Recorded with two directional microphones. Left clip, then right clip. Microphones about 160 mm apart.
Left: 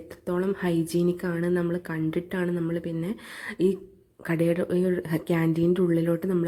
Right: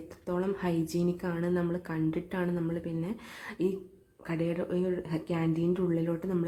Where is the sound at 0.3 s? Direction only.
20° left (ahead or behind).